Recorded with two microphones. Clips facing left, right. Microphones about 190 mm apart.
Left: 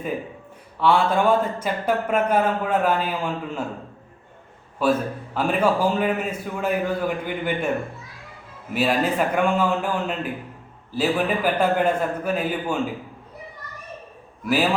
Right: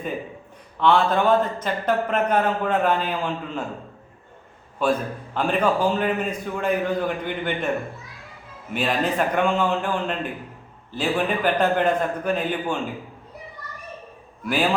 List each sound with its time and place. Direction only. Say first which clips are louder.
0.8 s speech: even; 10° left (ahead or behind)
4.8 s a man's voice: left 1 dB; 5° left (ahead or behind)
8.7 s speech: left 2 dB; 5° left (ahead or behind)
14.4 s a man's voice: left 2 dB; 5° left (ahead or behind)